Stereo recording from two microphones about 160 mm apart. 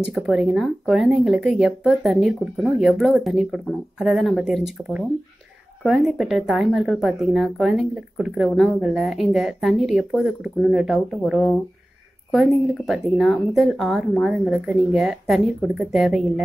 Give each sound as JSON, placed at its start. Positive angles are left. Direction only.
{"t": 0.0, "sound": "speech", "side_deg": -5}